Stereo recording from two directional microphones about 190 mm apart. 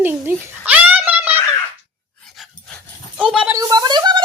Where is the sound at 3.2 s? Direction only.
5° right (ahead or behind).